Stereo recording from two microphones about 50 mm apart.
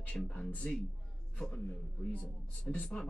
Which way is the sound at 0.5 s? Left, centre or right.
Centre.